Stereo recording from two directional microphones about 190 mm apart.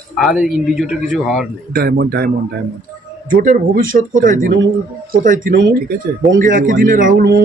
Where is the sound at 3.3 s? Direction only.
45° right (ahead or behind).